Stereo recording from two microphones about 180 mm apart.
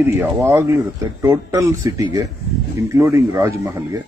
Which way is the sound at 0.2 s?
15° right (ahead or behind).